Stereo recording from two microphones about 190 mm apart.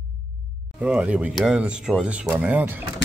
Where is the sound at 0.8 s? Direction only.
5° right (ahead or behind).